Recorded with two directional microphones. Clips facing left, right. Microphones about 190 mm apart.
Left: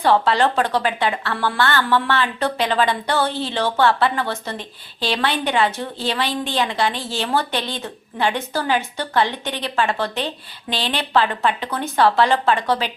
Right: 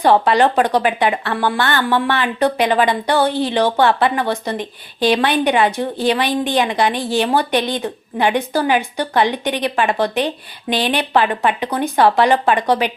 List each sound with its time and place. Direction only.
0.0 s a woman's voice: 15° right (ahead or behind)